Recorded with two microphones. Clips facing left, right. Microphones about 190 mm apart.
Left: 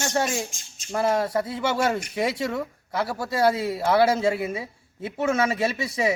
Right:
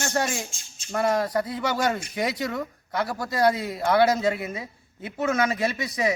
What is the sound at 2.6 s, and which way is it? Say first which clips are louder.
Speech: left 1 dB; 5° left (ahead or behind).